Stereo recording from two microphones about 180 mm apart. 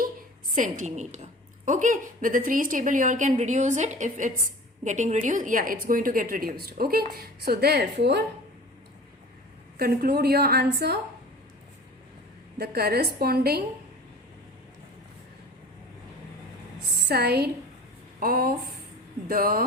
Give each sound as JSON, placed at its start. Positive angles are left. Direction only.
{"t": 0.5, "sound": "a woman's voice", "side_deg": -45}
{"t": 9.7, "sound": "a woman's voice", "side_deg": -60}
{"t": 12.5, "sound": "a woman's voice", "side_deg": -60}
{"t": 17.1, "sound": "a woman's voice", "side_deg": -65}